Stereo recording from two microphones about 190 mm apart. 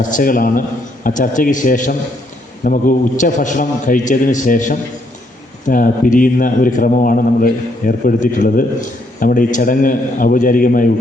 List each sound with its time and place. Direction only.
0.1 s a man's voice: 45° left (ahead or behind)